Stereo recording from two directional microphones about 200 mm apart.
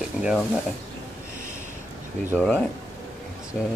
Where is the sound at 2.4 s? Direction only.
5° left (ahead or behind).